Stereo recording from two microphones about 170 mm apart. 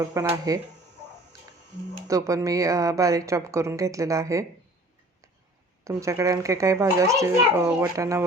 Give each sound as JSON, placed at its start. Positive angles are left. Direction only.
{"t": 0.0, "sound": "a woman's voice", "side_deg": -20}
{"t": 2.0, "sound": "a woman's voice", "side_deg": -20}
{"t": 5.8, "sound": "a child's voice", "side_deg": -15}